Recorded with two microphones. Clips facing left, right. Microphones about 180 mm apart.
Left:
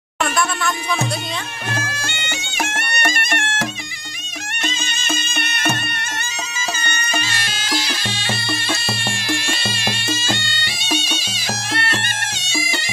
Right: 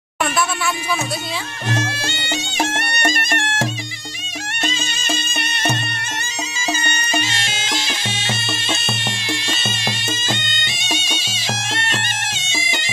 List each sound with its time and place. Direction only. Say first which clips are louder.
0.2 s a sound: even; 5° right (ahead or behind)
1.9 s music: right 3 dB; 30° right (ahead or behind)
7.1 s music: right 3 dB; 20° right (ahead or behind)